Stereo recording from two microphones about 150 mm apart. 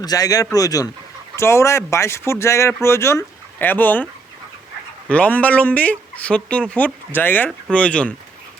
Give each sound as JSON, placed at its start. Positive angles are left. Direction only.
{"t": 0.0, "sound": "a man's voice", "side_deg": 25}
{"t": 5.0, "sound": "speech", "side_deg": 10}